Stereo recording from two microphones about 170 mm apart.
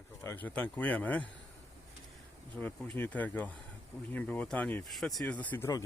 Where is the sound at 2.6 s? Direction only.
10° left (ahead or behind).